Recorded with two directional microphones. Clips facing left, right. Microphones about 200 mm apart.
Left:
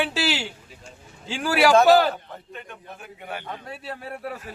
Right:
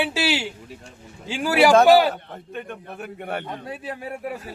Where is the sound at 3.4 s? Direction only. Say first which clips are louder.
Right 3 dB; 15° right (ahead or behind).